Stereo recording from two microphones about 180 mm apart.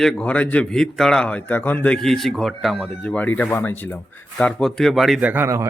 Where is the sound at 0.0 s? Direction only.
5° left (ahead or behind).